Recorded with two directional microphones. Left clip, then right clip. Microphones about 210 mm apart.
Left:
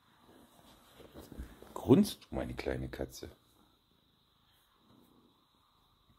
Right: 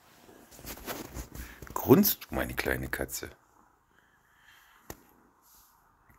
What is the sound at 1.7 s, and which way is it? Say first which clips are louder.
Speech: right 5 dB; 5° left (ahead or behind).